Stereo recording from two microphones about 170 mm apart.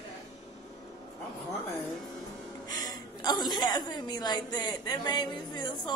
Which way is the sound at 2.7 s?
20° left (ahead or behind).